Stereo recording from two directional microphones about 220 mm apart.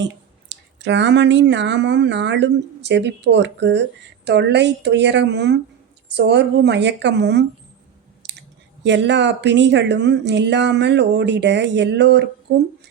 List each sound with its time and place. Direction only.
0.0 s speech: 55° right (ahead or behind)